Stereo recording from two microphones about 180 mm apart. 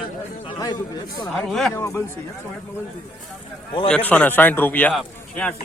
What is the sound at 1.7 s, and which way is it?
Speech, 15° left (ahead or behind).